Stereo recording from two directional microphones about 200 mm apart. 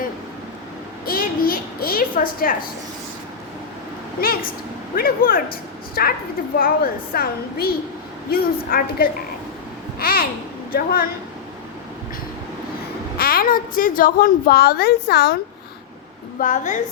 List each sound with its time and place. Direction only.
1.0 s a sound: 45° left (ahead or behind)
4.9 s a woman's voice: 45° left (ahead or behind)
10.0 s babbling: 50° left (ahead or behind)
10.7 s a woman's voice: 45° left (ahead or behind)
13.1 s a woman's voice: 45° left (ahead or behind)
16.4 s a woman's voice: 40° left (ahead or behind)